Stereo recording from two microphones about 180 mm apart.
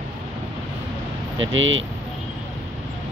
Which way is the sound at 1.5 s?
90° right.